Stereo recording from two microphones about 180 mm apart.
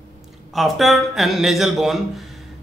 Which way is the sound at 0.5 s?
Centre (ahead or behind).